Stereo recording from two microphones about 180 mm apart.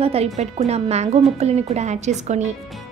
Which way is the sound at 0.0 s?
35° right (ahead or behind).